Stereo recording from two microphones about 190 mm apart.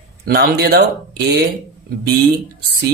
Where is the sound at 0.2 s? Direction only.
50° right (ahead or behind).